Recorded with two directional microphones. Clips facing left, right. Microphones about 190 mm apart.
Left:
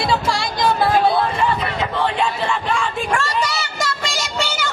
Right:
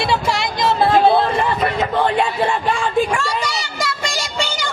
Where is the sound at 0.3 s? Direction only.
20° right (ahead or behind).